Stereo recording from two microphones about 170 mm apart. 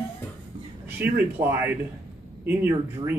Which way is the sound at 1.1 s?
10° right (ahead or behind).